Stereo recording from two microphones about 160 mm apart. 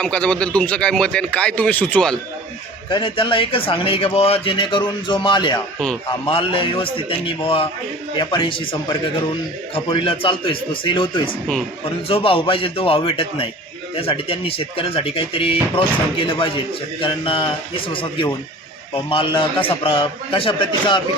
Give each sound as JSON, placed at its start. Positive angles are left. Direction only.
{"t": 0.0, "sound": "speech", "side_deg": 5}
{"t": 2.9, "sound": "a man's voice", "side_deg": 30}